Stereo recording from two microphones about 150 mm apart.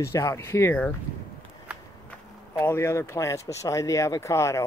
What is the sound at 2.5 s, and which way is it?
Speech, 20° left (ahead or behind).